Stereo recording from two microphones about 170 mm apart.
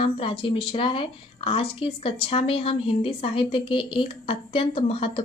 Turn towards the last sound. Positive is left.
turn(degrees=35)  # may be behind; listen again after turning